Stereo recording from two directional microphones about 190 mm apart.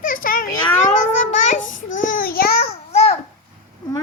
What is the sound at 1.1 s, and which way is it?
Child singing, 40° left (ahead or behind).